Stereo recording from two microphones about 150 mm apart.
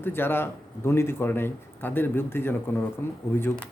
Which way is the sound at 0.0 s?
15° left (ahead or behind).